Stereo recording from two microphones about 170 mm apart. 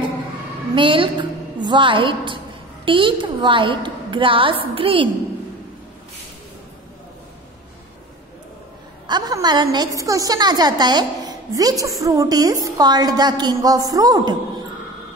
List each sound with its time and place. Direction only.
0.7 s a woman's voice: 30° right (ahead or behind)
9.0 s a woman's voice: 25° right (ahead or behind)